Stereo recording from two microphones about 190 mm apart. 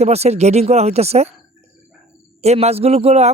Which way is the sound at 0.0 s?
35° right (ahead or behind).